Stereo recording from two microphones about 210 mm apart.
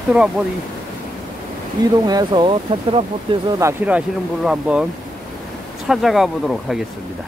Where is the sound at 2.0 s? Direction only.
20° right (ahead or behind); by 4.8 s 5° right (ahead or behind).